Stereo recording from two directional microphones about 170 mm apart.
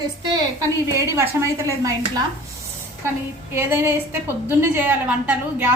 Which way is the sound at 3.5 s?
15° right (ahead or behind).